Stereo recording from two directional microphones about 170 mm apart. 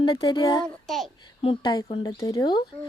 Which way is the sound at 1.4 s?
30° left (ahead or behind).